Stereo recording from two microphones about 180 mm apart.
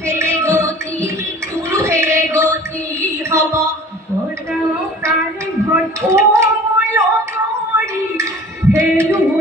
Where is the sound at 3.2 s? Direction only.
15° right (ahead or behind).